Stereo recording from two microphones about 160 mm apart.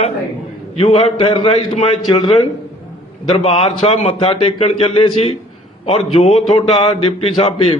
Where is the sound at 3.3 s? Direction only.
35° left (ahead or behind).